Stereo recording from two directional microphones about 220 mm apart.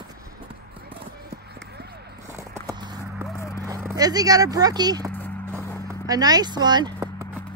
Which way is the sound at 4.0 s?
15° right (ahead or behind).